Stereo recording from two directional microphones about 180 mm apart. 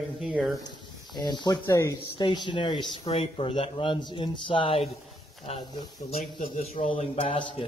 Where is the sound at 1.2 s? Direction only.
25° left (ahead or behind).